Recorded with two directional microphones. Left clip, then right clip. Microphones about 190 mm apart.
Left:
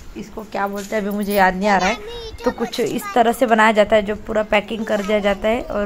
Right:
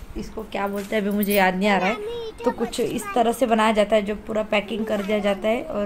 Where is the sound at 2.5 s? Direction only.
15° left (ahead or behind).